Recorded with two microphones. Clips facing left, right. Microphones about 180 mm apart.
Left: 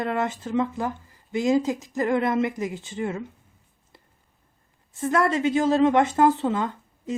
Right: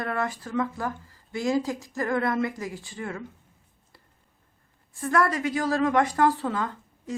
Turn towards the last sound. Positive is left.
turn(degrees=20)  # may be behind; listen again after turning